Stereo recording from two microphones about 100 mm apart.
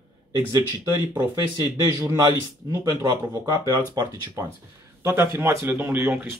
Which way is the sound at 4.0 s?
40° right (ahead or behind).